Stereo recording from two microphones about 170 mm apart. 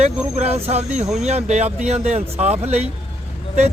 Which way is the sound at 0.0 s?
40° right (ahead or behind).